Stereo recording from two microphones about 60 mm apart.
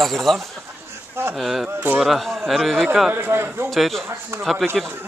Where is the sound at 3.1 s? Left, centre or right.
Right.